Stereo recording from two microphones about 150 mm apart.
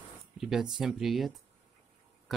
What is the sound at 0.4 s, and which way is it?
Speech, 5° right (ahead or behind).